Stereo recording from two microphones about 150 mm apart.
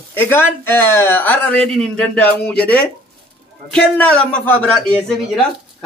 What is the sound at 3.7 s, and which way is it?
Speech, 10° left (ahead or behind).